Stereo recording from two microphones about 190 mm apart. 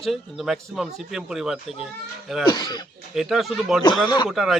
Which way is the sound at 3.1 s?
Centre (ahead or behind).